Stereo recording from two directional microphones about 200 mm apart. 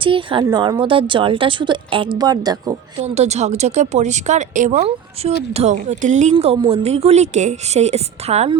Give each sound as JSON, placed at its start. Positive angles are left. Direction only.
{"t": 0.0, "sound": "speech", "side_deg": -25}
{"t": 3.2, "sound": "speech", "side_deg": -35}